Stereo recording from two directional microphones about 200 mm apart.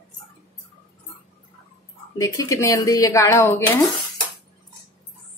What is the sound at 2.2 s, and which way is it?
Speech, 15° left (ahead or behind).